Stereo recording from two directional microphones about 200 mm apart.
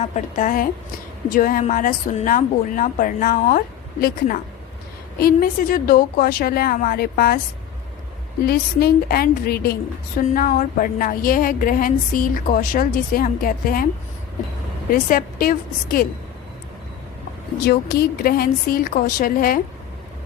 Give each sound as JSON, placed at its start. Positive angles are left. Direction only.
{"t": 0.0, "sound": "speech", "side_deg": 40}
{"t": 5.2, "sound": "a woman's voice", "side_deg": 45}
{"t": 8.4, "sound": "a woman's voice", "side_deg": 50}
{"t": 15.1, "sound": "a woman's voice", "side_deg": 45}
{"t": 17.7, "sound": "a woman's voice", "side_deg": 50}